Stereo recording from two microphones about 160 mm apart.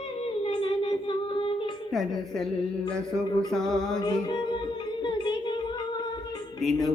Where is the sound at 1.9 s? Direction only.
Centre (ahead or behind).